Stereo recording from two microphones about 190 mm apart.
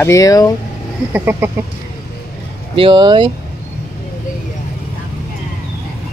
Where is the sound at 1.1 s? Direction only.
10° right (ahead or behind).